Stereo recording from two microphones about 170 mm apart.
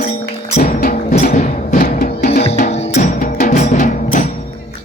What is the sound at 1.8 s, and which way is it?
Music, 65° left (ahead or behind).